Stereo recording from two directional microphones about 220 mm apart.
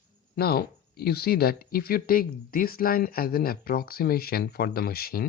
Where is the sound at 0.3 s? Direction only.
45° left (ahead or behind).